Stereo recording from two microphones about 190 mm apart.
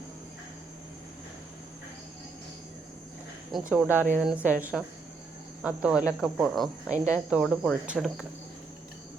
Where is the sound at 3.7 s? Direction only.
5° right (ahead or behind).